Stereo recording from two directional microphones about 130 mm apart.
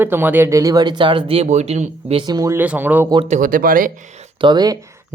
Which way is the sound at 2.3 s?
25° right (ahead or behind).